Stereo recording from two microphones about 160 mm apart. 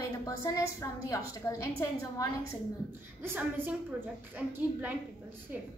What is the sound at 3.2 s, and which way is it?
A woman's voice, 15° right (ahead or behind).